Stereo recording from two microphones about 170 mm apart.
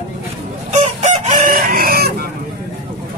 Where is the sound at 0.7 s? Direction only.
45° right (ahead or behind); by 2.1 s 60° right (ahead or behind).